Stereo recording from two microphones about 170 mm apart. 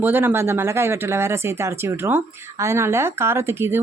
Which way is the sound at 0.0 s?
10° right (ahead or behind).